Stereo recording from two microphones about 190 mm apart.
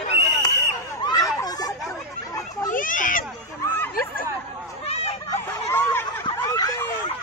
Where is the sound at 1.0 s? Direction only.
20° left (ahead or behind).